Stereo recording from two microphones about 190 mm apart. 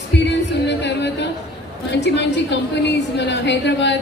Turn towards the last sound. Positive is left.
turn(degrees=65)  # may be behind; listen again after turning